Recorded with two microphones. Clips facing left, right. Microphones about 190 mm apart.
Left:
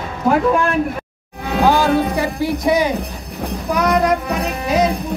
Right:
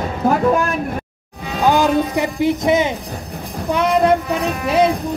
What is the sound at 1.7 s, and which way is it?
Speech, 20° right (ahead or behind).